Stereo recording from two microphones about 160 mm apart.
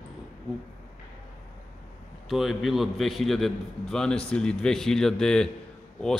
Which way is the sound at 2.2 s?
Centre (ahead or behind).